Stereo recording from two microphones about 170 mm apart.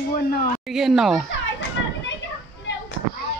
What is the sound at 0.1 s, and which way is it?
Speech, 60° left (ahead or behind).